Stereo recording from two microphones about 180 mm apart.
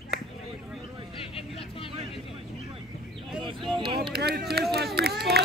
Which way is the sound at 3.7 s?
25° right (ahead or behind).